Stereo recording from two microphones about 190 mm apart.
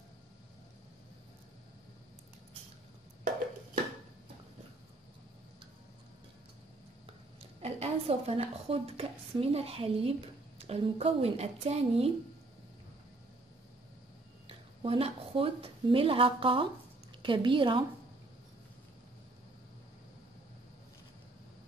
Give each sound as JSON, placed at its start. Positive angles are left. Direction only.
{"t": 7.3, "sound": "a woman's voice", "side_deg": -30}
{"t": 14.5, "sound": "a woman's voice", "side_deg": -30}